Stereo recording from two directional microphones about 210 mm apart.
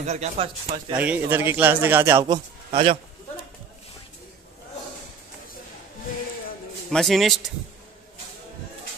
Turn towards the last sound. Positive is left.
turn(degrees=0)  # may be behind; listen again after turning